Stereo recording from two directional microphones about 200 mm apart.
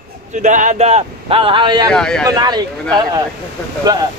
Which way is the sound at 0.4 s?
40° right (ahead or behind).